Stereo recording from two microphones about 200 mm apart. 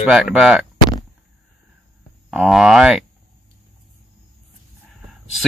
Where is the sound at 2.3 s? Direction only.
Centre (ahead or behind).